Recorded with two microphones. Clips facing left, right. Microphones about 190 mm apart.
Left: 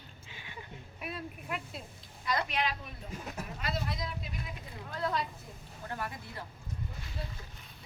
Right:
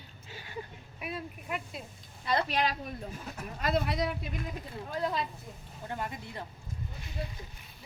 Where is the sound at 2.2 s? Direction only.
30° right (ahead or behind).